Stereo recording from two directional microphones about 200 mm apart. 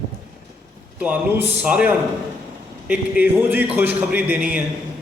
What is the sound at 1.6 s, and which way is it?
A man's voice, 5° right (ahead or behind).